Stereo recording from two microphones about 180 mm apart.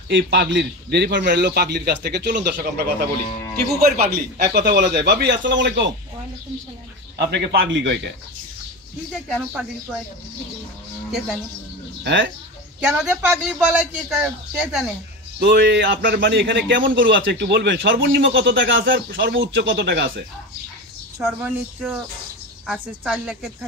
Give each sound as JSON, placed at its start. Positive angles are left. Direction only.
{"t": 0.1, "sound": "a man's voice", "side_deg": -70}
{"t": 3.9, "sound": "a man's voice", "side_deg": -60}
{"t": 7.2, "sound": "a man's voice", "side_deg": -70}
{"t": 9.3, "sound": "a man's voice", "side_deg": -5}
{"t": 11.1, "sound": "a man's voice", "side_deg": -5}
{"t": 12.0, "sound": "speech", "side_deg": -75}
{"t": 12.8, "sound": "a man's voice", "side_deg": -5}
{"t": 15.3, "sound": "a man's voice", "side_deg": -75}
{"t": 18.9, "sound": "a man's voice", "side_deg": -60}
{"t": 21.2, "sound": "a man's voice", "side_deg": -5}